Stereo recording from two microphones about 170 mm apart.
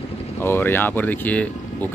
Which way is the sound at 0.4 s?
15° left (ahead or behind).